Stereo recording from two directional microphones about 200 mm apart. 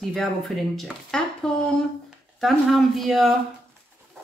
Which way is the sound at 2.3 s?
Centre (ahead or behind).